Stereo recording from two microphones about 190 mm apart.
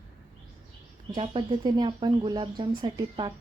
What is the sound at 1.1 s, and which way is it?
A woman's voice, 25° right (ahead or behind).